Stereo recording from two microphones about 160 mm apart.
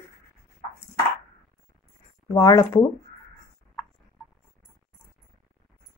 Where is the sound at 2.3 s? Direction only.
20° left (ahead or behind).